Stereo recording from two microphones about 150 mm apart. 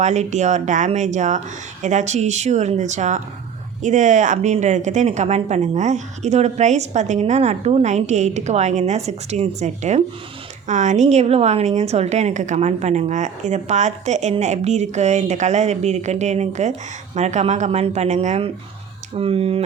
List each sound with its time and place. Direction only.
0.0 s a woman's voice: 50° right (ahead or behind)